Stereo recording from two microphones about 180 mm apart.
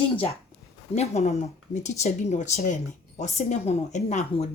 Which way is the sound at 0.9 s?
35° left (ahead or behind).